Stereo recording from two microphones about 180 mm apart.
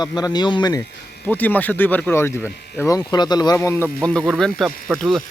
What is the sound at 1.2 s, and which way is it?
A man's voice, 10° left (ahead or behind).